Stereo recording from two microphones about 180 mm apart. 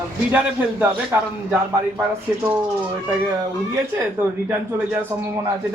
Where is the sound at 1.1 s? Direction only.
15° right (ahead or behind).